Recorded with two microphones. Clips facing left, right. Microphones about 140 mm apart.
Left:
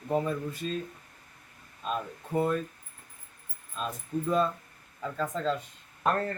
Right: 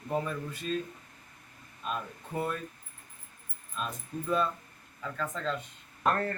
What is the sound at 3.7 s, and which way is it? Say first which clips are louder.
A man's voice: left 4 dB; 30° left (ahead or behind).